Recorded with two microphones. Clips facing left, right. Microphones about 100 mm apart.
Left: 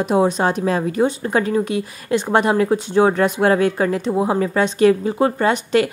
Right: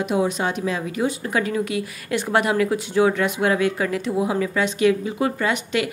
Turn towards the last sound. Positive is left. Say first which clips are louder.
# left 6 dB
turn(degrees=40)  # may be behind; listen again after turning